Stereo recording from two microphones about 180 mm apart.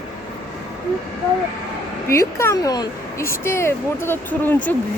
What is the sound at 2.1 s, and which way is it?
Speech, 15° left (ahead or behind).